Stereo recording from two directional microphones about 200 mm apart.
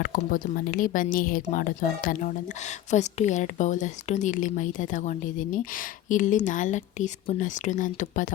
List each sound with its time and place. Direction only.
0.0 s a woman's voice: 45° left (ahead or behind)